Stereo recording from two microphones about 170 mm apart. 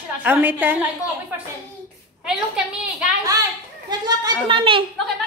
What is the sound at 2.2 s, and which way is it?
Speech, 5° right (ahead or behind).